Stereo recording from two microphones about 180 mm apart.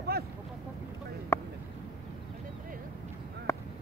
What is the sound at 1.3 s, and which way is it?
Vehicle, 15° left (ahead or behind).